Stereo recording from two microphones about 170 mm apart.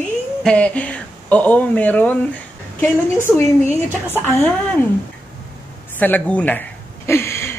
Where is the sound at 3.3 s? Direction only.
5° left (ahead or behind).